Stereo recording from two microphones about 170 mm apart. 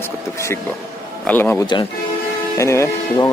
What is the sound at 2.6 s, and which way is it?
Speech, 15° left (ahead or behind).